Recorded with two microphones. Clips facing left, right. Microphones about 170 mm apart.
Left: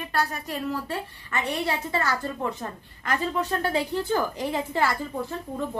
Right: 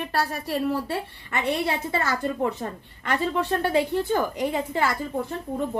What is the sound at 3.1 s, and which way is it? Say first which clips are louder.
A woman's voice: right 2 dB; 30° right (ahead or behind).